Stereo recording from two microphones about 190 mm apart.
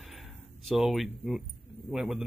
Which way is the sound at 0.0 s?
Centre (ahead or behind).